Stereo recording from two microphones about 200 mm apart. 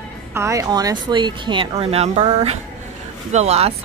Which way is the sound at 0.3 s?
15° right (ahead or behind).